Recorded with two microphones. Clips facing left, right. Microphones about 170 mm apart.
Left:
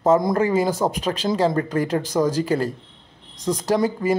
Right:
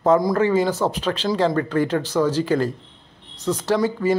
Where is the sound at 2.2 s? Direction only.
45° left (ahead or behind).